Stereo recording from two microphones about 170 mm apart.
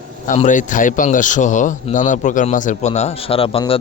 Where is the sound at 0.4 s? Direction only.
50° left (ahead or behind).